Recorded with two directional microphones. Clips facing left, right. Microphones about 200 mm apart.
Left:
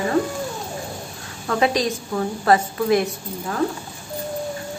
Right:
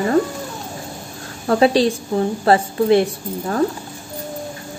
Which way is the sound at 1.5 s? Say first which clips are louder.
Right 6 dB; 30° right (ahead or behind).